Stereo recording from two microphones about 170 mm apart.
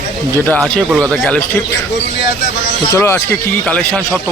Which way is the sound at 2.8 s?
15° left (ahead or behind).